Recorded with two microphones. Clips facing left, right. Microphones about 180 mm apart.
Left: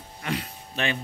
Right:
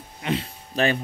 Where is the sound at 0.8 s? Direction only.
35° right (ahead or behind).